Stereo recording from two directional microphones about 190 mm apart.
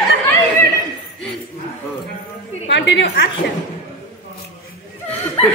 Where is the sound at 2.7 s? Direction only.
65° left (ahead or behind).